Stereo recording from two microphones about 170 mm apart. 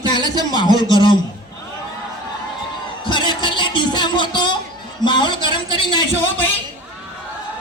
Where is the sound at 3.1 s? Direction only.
25° left (ahead or behind).